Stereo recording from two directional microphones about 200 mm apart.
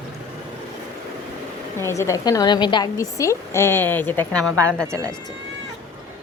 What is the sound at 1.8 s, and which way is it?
A woman's voice, 15° left (ahead or behind).